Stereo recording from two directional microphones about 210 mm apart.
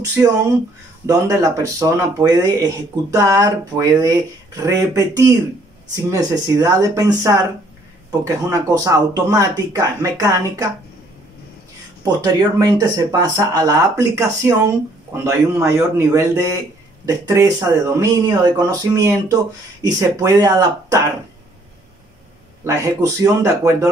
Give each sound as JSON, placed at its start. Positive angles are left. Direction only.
{"t": 1.0, "sound": "speech", "side_deg": -15}
{"t": 12.0, "sound": "speech", "side_deg": -15}
{"t": 22.6, "sound": "speech", "side_deg": -15}